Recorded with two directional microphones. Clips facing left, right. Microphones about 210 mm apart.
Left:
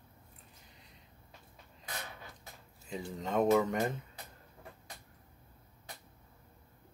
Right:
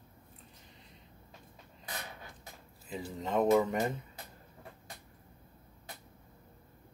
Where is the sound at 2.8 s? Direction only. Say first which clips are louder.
Right 1 dB; centre (ahead or behind).